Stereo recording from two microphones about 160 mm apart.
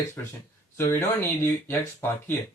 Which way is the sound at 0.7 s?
15° left (ahead or behind).